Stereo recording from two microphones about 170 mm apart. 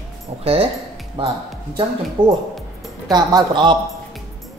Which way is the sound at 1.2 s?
30° right (ahead or behind).